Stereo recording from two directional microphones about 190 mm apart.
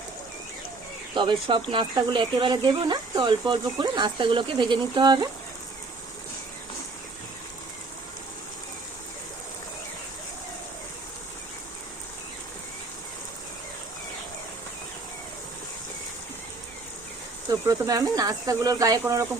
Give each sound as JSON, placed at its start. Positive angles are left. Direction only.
{"t": 1.1, "sound": "speech", "side_deg": -25}
{"t": 17.5, "sound": "speech", "side_deg": -20}